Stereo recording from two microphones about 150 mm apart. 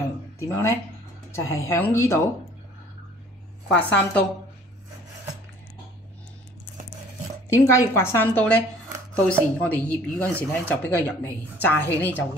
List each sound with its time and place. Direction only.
0.4 s speech: 20° left (ahead or behind)
3.7 s speech: 10° left (ahead or behind)
7.4 s speech: 20° left (ahead or behind)